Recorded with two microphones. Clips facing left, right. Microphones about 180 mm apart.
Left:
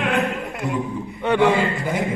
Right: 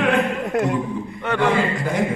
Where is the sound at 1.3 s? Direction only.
15° left (ahead or behind).